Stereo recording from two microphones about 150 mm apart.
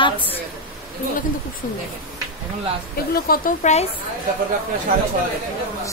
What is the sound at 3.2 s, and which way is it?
Speech, 65° left (ahead or behind).